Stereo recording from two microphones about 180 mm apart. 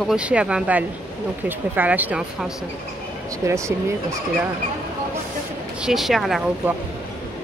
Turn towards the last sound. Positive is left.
turn(degrees=0)  # may be behind; listen again after turning